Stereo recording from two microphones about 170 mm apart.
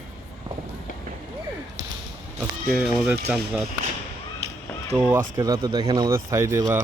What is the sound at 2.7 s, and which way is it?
Speech, centre (ahead or behind).